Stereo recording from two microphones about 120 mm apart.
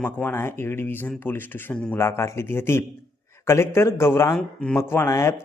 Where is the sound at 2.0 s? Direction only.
20° left (ahead or behind).